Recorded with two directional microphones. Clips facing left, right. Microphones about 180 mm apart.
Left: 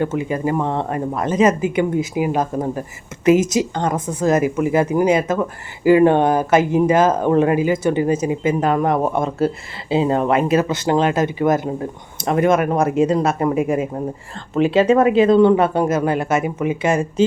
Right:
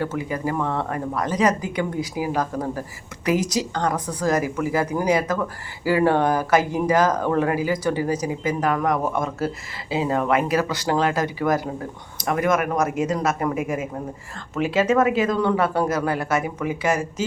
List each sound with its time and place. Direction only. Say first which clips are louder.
0.0 s speech: left 5 dB; 20° left (ahead or behind)